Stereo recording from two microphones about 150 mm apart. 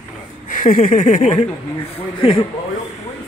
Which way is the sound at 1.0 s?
55° left (ahead or behind).